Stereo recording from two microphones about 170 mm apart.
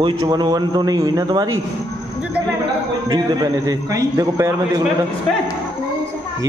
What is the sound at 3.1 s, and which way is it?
A man's voice, 20° right (ahead or behind).